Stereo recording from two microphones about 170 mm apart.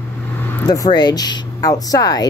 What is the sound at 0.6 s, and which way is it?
Speech, 20° left (ahead or behind).